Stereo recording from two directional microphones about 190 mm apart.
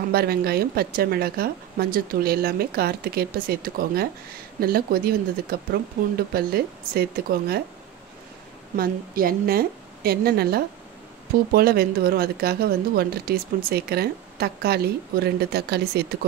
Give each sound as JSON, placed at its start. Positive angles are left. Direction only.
{"t": 0.1, "sound": "a woman's voice", "side_deg": -55}
{"t": 8.7, "sound": "a woman's voice", "side_deg": -50}